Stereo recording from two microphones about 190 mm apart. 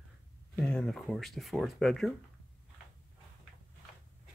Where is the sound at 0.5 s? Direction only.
5° left (ahead or behind).